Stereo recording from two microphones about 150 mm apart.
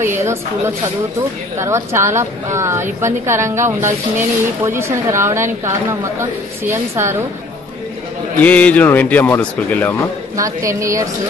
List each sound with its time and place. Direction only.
0.0 s a woman's voice: 15° right (ahead or behind)
1.6 s a woman's voice: 20° right (ahead or behind)
8.4 s a man's voice: 10° left (ahead or behind)
10.3 s a woman's voice: 20° right (ahead or behind)